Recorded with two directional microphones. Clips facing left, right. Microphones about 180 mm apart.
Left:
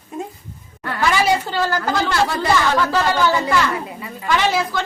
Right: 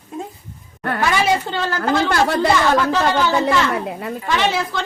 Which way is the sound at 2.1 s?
60° right (ahead or behind).